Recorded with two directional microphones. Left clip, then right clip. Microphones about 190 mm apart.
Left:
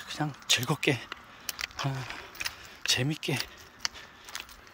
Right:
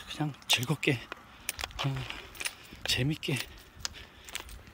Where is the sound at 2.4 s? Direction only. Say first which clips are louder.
Left 3 dB; 10° right (ahead or behind).